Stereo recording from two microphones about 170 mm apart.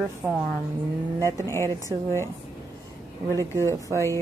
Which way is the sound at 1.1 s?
20° right (ahead or behind).